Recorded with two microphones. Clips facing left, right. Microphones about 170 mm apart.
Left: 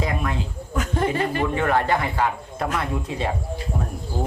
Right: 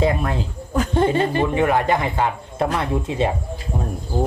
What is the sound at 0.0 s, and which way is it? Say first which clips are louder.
A woman's voice: right 5 dB; 35° right (ahead or behind).